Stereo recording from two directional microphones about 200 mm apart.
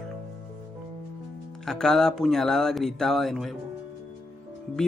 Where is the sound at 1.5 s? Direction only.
Centre (ahead or behind).